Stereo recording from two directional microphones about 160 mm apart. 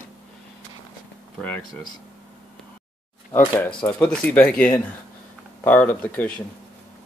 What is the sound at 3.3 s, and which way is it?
Speech, 15° left (ahead or behind).